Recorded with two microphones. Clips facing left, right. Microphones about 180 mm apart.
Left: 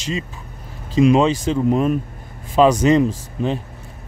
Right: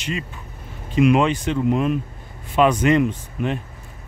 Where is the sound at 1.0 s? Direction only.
35° left (ahead or behind).